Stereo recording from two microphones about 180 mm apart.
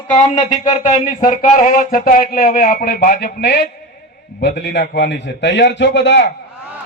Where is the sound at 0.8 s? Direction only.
45° left (ahead or behind).